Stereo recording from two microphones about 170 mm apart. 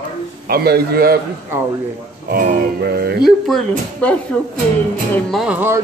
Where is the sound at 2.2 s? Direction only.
55° right (ahead or behind).